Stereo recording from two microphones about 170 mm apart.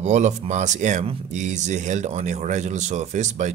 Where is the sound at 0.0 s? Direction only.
45° right (ahead or behind).